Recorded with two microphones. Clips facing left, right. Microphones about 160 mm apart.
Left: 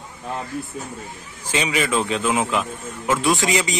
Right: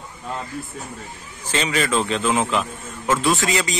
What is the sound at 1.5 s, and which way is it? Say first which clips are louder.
A man's voice: even; 10° left (ahead or behind).